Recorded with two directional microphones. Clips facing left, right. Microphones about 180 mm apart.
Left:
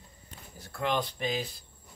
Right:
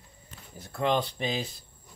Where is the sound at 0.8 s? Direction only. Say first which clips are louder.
Right 3 dB; 20° right (ahead or behind).